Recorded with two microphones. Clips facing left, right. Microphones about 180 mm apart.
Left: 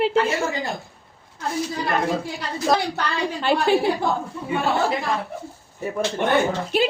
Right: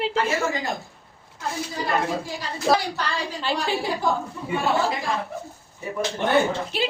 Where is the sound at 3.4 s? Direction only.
55° left (ahead or behind).